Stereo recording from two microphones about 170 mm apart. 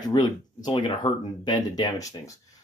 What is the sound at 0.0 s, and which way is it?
Speech, 25° left (ahead or behind).